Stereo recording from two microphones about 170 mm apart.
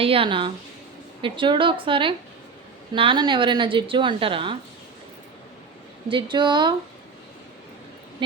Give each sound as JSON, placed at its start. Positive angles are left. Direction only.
{"t": 0.0, "sound": "a woman's voice", "side_deg": -35}
{"t": 6.1, "sound": "a woman's voice", "side_deg": -30}